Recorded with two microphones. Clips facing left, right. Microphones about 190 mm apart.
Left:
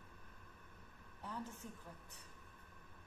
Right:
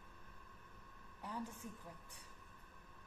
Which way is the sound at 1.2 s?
10° right (ahead or behind).